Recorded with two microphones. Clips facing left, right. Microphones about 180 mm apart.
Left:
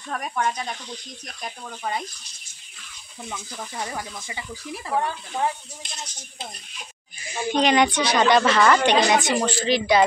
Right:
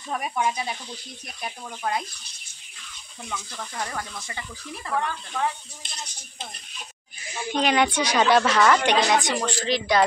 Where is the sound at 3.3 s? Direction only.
10° left (ahead or behind).